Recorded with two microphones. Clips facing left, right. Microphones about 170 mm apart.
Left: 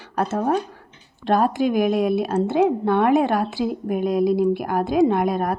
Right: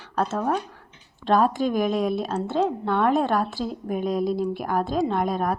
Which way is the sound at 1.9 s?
5° left (ahead or behind).